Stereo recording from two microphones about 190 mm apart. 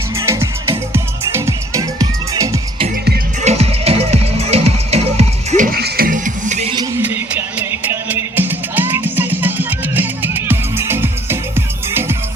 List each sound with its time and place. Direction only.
0.2 s music: 15° right (ahead or behind)
3.4 s music: 35° right (ahead or behind)
5.7 s music: 50° right (ahead or behind)
7.0 s music: 10° right (ahead or behind)